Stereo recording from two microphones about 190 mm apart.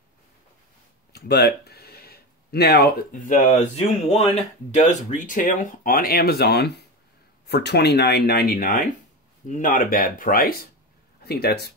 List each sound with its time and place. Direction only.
1.1 s speech: 60° left (ahead or behind)